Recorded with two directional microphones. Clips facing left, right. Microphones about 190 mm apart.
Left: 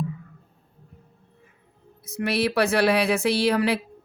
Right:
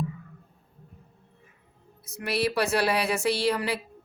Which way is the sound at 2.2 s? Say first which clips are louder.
Left 4 dB; 65° left (ahead or behind).